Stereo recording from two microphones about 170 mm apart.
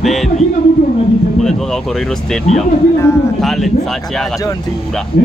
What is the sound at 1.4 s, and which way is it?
Speech, centre (ahead or behind).